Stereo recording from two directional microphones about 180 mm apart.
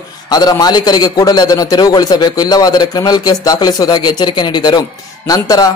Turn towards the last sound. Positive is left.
turn(degrees=20)  # may be behind; listen again after turning